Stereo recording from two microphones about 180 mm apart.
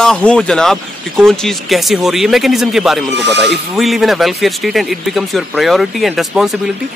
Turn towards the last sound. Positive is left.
turn(degrees=0)  # may be behind; listen again after turning